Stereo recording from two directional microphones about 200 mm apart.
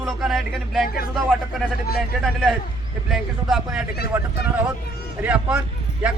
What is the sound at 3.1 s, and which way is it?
A man's voice, centre (ahead or behind).